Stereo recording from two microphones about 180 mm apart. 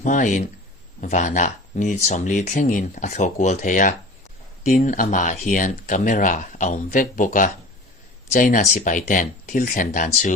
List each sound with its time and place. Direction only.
0.0 s speech: 45° left (ahead or behind)